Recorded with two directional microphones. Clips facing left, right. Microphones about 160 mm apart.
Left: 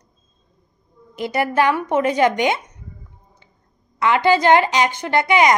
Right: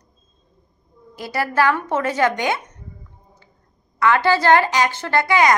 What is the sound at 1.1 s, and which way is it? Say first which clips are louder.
A woman's voice: left 2 dB; 20° left (ahead or behind).